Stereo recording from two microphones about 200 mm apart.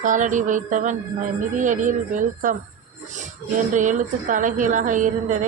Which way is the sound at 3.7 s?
40° right (ahead or behind).